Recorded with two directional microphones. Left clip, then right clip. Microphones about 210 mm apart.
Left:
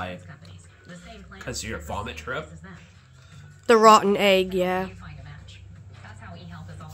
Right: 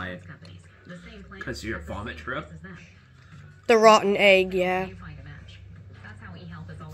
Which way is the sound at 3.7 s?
20° left (ahead or behind).